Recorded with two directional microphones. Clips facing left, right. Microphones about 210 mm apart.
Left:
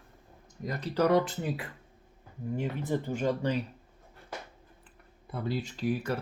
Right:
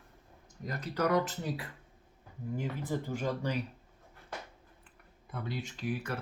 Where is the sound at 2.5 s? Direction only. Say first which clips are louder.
Left 4 dB; 25° left (ahead or behind).